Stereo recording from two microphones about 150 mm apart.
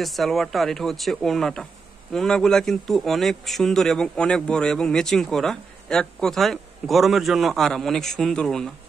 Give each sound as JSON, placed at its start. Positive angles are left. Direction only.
{"t": 0.0, "sound": "a man's voice", "side_deg": 0}